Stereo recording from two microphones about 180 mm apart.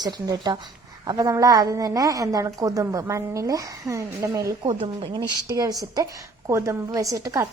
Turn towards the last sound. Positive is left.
turn(degrees=-20)  # may be behind; listen again after turning